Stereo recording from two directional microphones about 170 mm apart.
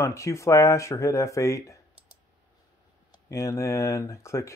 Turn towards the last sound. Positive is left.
turn(degrees=15)  # may be behind; listen again after turning